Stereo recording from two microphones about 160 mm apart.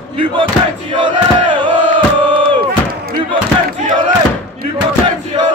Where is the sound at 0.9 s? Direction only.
30° right (ahead or behind).